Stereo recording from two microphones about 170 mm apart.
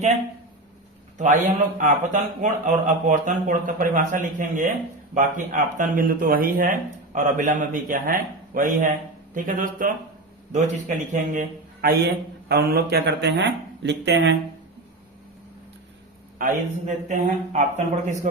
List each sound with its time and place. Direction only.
1.2 s a man's voice: 45° right (ahead or behind); by 14.3 s 90° right
16.4 s a man's voice: 50° right (ahead or behind)